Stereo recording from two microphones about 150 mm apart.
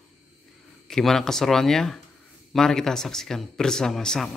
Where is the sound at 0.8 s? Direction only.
5° left (ahead or behind).